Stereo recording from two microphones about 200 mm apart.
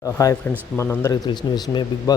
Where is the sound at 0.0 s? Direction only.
15° left (ahead or behind).